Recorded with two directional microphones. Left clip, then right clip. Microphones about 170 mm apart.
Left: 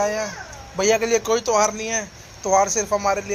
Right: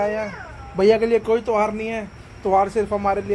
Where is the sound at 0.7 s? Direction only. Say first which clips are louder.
Right 3 dB; 25° right (ahead or behind).